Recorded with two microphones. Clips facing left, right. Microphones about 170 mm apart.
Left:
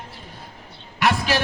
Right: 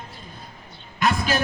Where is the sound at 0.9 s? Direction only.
85° left.